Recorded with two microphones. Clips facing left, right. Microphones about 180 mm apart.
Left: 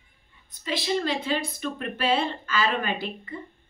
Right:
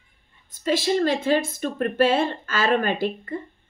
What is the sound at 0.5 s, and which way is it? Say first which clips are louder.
A woman's voice: right 6 dB; 45° right (ahead or behind).